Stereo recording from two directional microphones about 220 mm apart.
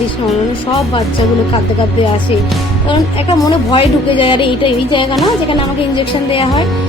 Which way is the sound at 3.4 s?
25° left (ahead or behind).